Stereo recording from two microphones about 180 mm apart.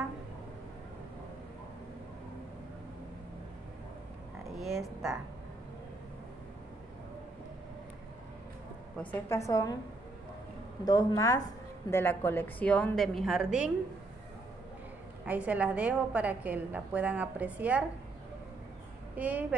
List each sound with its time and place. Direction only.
4.6 s a sound: centre (ahead or behind)
8.9 s a woman's voice: 10° left (ahead or behind)
10.9 s a woman's voice: 20° left (ahead or behind); by 13.7 s 5° right (ahead or behind)
15.2 s a woman's voice: 10° right (ahead or behind)
19.1 s a woman's voice: 10° right (ahead or behind)